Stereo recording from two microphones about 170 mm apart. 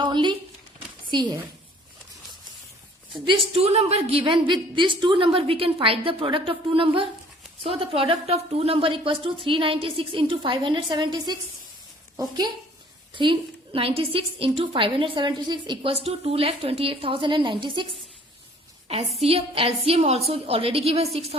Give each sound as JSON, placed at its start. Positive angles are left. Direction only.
{"t": 0.0, "sound": "a sound", "side_deg": -25}
{"t": 1.1, "sound": "a woman's voice", "side_deg": -25}
{"t": 3.2, "sound": "a woman's voice", "side_deg": -35}
{"t": 18.9, "sound": "a woman's voice", "side_deg": -35}